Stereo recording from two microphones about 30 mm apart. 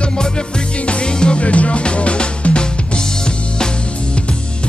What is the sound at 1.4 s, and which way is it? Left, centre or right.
Music, left.